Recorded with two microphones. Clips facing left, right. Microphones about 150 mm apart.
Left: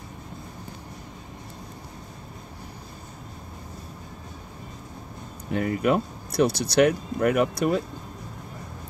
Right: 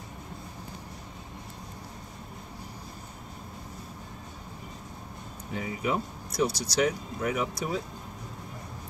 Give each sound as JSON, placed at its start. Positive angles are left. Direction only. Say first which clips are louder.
{"t": 5.5, "sound": "speech", "louder": "left 8 dB", "side_deg": 65}